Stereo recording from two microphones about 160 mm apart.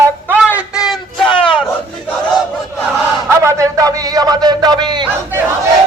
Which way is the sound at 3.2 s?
20° right (ahead or behind).